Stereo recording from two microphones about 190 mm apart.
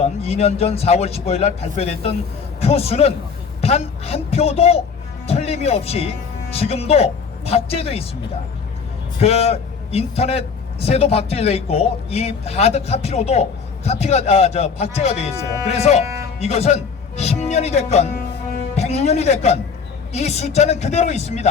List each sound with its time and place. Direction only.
0.0 s a man's voice: 35° left (ahead or behind)
9.2 s a man's voice: 30° left (ahead or behind)